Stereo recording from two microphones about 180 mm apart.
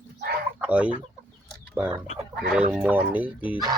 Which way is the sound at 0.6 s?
5° right (ahead or behind).